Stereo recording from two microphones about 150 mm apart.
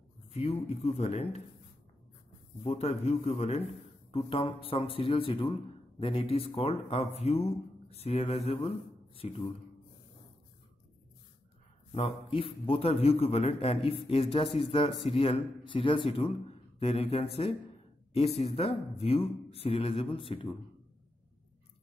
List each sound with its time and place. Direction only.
0.3 s speech: 45° left (ahead or behind)
2.6 s speech: 45° left (ahead or behind)
11.9 s a man's voice: 35° left (ahead or behind)